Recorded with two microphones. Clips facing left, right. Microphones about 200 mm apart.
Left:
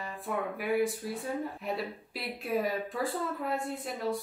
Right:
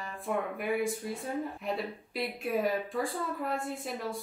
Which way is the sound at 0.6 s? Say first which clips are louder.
Left 2 dB; centre (ahead or behind).